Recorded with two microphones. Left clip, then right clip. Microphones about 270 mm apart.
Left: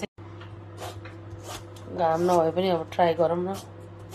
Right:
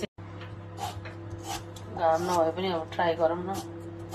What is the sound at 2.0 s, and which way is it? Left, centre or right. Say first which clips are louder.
Speech: left 3 dB; left.